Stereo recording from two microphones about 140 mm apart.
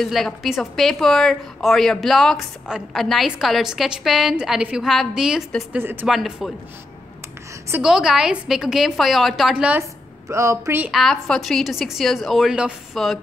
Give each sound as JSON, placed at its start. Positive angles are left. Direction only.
{"t": 0.0, "sound": "a woman's voice", "side_deg": 0}
{"t": 6.0, "sound": "a woman's voice", "side_deg": 0}
{"t": 7.8, "sound": "a woman's voice", "side_deg": -5}
{"t": 10.2, "sound": "speech", "side_deg": -20}
{"t": 10.9, "sound": "a woman's voice", "side_deg": 0}